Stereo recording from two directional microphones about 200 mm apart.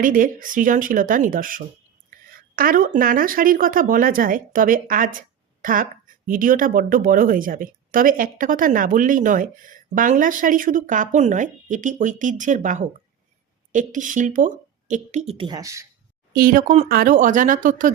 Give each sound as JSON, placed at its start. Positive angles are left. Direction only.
{"t": 0.0, "sound": "a woman's voice", "side_deg": -45}
{"t": 16.3, "sound": "speech", "side_deg": -45}